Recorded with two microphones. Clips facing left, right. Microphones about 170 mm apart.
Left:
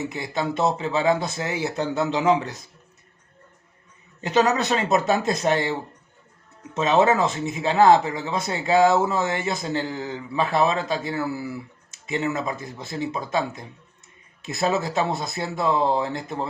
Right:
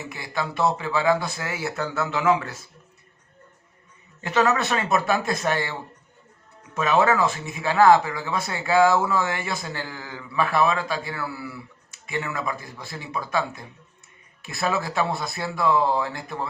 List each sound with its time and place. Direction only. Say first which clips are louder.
0.1 s speech: left 3 dB; 20° left (ahead or behind)
4.2 s speech: left 1 dB; 20° left (ahead or behind)
6.7 s speech: left 2 dB; 20° left (ahead or behind)